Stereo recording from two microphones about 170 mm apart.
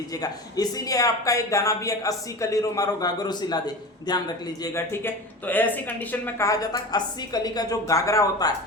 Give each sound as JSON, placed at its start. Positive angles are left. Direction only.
{"t": 0.1, "sound": "speech", "side_deg": 20}